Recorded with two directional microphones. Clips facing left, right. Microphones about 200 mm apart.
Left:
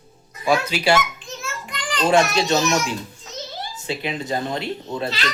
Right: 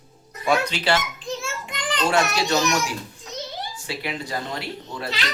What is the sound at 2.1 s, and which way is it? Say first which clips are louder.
Speech: left 5 dB; 20° left (ahead or behind).